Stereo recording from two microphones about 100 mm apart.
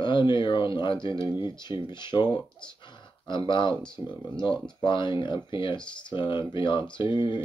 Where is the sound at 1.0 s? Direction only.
55° left (ahead or behind).